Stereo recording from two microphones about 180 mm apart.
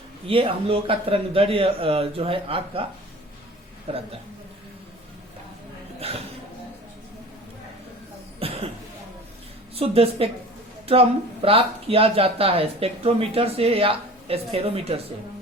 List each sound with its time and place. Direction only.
0.3 s speech: 30° right (ahead or behind)
3.9 s speech: 35° right (ahead or behind)
6.0 s speech: 35° right (ahead or behind)
8.4 s cough: 30° right (ahead or behind)
9.7 s speech: 30° right (ahead or behind)
11.4 s speech: 30° right (ahead or behind)